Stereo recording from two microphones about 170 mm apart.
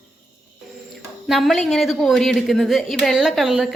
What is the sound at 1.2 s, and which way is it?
A woman's voice, centre (ahead or behind).